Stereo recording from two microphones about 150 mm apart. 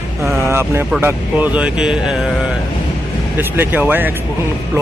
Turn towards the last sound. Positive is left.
turn(degrees=-10)  # may be behind; listen again after turning